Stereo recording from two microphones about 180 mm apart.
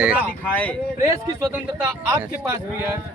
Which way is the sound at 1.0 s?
15° right (ahead or behind).